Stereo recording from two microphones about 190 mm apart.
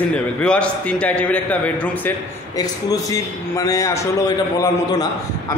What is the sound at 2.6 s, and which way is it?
A man's voice, 20° left (ahead or behind).